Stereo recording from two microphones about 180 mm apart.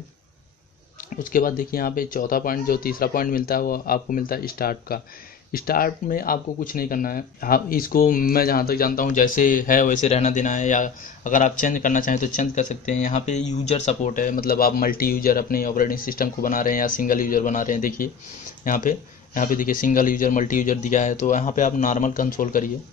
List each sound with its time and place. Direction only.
1.1 s speech: 50° left (ahead or behind)